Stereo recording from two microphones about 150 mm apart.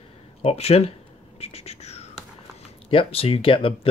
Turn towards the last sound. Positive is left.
turn(degrees=35)  # may be behind; listen again after turning